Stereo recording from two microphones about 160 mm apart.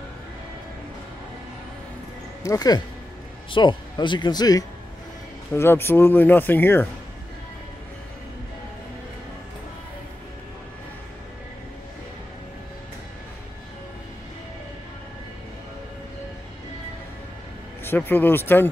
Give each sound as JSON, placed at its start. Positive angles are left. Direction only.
{"t": 2.4, "sound": "a man's voice", "side_deg": 20}
{"t": 17.8, "sound": "speech", "side_deg": 10}